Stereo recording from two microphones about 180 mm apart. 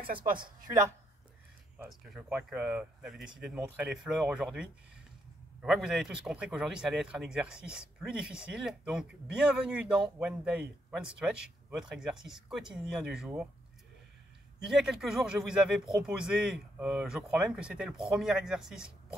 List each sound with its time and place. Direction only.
0.1 s speech: 55° right (ahead or behind)
1.8 s speech: centre (ahead or behind)
14.7 s speech: centre (ahead or behind)